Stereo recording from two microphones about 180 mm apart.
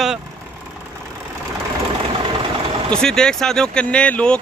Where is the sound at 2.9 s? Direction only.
5° left (ahead or behind).